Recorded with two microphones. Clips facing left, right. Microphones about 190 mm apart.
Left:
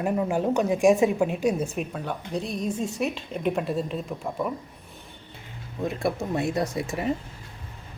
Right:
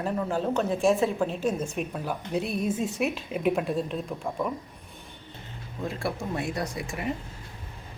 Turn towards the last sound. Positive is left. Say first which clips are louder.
# left 5 dB
turn(degrees=25)  # may be behind; listen again after turning